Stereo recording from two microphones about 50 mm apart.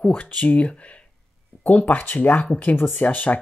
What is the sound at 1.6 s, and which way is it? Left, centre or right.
Speech, left.